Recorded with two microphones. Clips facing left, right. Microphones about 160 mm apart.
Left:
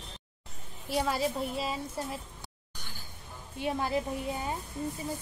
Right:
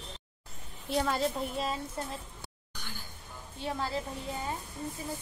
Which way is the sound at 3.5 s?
15° left (ahead or behind).